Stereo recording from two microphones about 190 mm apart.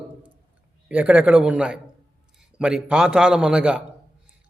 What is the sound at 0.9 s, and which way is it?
A man's voice, 5° right (ahead or behind).